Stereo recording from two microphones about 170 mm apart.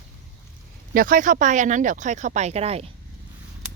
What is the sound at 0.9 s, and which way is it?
Speech, 55° right (ahead or behind).